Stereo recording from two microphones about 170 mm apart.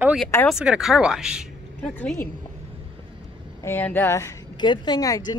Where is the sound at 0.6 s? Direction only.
5° right (ahead or behind).